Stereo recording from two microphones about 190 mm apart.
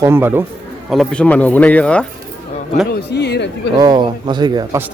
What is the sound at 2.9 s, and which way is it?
Speech, 60° left (ahead or behind).